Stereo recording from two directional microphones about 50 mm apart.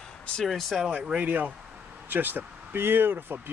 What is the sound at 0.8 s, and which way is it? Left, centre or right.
Speech, right.